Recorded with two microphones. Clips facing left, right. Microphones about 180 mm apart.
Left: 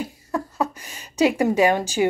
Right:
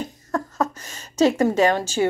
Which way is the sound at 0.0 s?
10° left (ahead or behind).